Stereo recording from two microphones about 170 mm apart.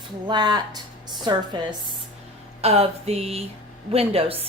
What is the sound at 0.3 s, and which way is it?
Speech, 25° right (ahead or behind).